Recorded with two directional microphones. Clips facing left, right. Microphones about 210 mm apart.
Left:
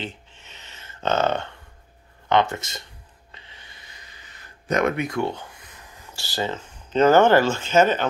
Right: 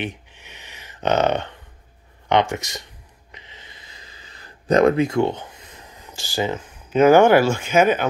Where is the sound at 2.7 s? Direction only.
15° right (ahead or behind).